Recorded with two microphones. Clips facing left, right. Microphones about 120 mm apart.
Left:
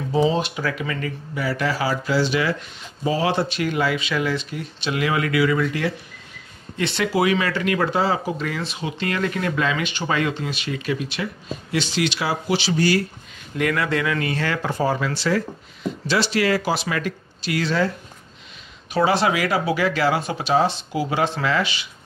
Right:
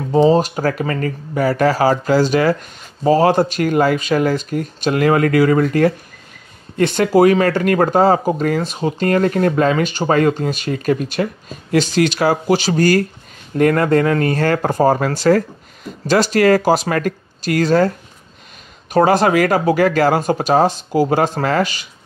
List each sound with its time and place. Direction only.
0.1 s speech: 45° right (ahead or behind)
18.9 s speech: 45° right (ahead or behind)